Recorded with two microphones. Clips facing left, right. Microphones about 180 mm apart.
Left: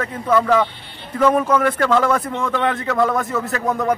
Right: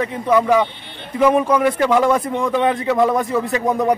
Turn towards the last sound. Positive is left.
turn(degrees=-15)  # may be behind; listen again after turning